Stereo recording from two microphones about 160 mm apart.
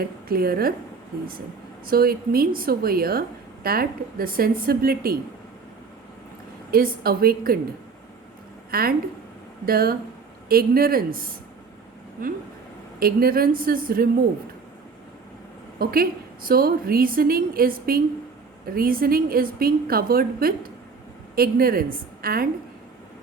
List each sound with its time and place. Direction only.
0.0 s a woman's voice: 70° right (ahead or behind)
1.9 s a woman's voice: 70° right (ahead or behind)
6.7 s a woman's voice: 65° right (ahead or behind)
8.7 s a woman's voice: 70° right (ahead or behind)
13.0 s a woman's voice: 70° right (ahead or behind)
15.8 s a woman's voice: 70° right (ahead or behind)